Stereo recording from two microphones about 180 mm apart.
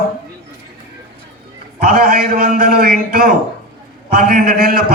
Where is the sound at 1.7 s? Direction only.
55° right (ahead or behind).